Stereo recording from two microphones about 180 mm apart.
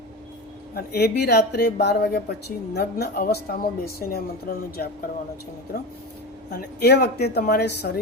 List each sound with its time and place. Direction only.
0.7 s a woman's voice: 60° left (ahead or behind)